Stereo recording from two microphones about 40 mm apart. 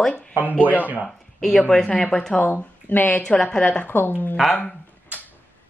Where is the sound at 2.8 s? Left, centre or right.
Left.